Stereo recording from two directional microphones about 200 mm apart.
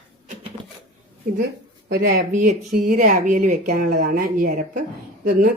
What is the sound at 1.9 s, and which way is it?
Speech, 50° right (ahead or behind).